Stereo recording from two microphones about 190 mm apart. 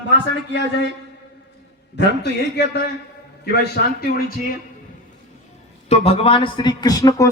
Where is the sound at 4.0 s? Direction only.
50° left (ahead or behind).